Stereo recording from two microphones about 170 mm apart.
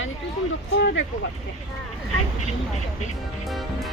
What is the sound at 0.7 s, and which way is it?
Speech, 90° left.